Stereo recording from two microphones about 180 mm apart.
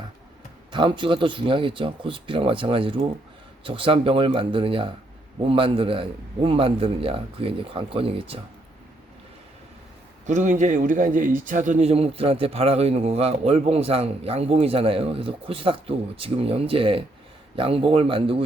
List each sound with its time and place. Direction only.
0.7 s speech: 25° right (ahead or behind)
10.2 s speech: 40° right (ahead or behind)